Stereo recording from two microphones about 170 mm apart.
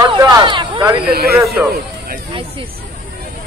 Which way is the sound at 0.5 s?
25° right (ahead or behind).